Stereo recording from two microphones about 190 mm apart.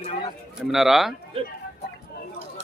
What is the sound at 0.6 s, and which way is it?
Speech, centre (ahead or behind).